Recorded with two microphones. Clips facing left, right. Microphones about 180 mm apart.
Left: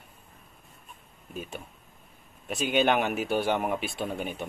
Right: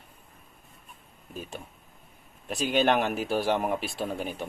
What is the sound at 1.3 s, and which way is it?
Speech, centre (ahead or behind).